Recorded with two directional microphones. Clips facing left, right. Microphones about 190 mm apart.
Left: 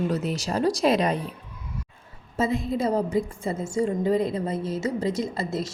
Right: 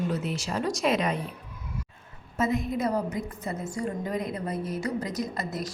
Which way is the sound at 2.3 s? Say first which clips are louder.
Left 2 dB; 30° left (ahead or behind).